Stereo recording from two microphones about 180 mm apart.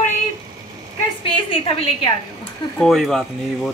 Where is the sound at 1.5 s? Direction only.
30° left (ahead or behind).